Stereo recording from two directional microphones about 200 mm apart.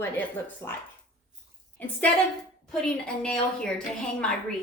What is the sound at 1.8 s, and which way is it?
A woman's voice, 10° left (ahead or behind).